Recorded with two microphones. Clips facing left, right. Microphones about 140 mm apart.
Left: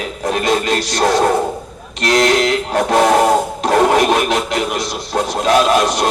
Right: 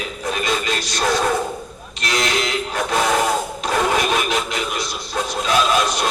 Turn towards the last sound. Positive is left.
turn(degrees=70)  # may be behind; listen again after turning